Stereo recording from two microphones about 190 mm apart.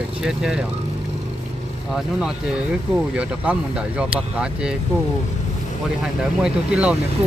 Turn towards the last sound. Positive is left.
turn(degrees=-5)  # may be behind; listen again after turning